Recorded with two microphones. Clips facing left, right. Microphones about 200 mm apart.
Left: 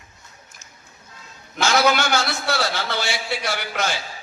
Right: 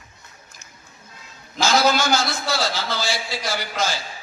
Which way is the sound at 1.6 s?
60° left (ahead or behind).